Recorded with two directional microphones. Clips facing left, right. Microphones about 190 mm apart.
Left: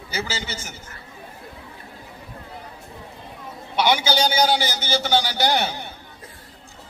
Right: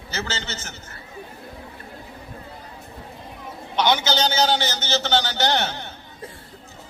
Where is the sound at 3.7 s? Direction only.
10° left (ahead or behind).